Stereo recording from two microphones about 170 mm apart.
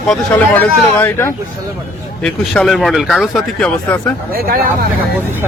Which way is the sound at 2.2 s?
5° left (ahead or behind).